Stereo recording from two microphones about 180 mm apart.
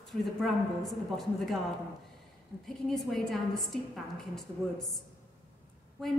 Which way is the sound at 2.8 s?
Centre (ahead or behind).